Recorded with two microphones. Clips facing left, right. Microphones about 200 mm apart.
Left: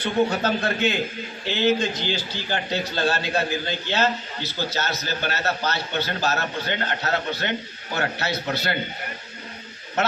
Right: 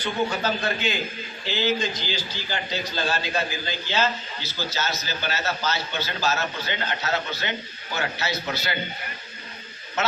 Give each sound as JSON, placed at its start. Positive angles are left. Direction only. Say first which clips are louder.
{"t": 0.0, "sound": "a man's voice", "louder": "left 4 dB", "side_deg": 60}